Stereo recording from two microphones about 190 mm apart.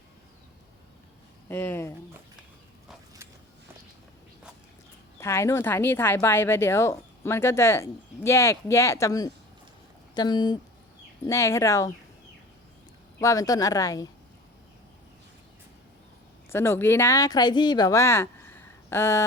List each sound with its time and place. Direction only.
1.5 s speech: 10° left (ahead or behind)
5.1 s speech: 15° left (ahead or behind)
13.1 s speech: 15° left (ahead or behind)
16.5 s speech: 10° left (ahead or behind)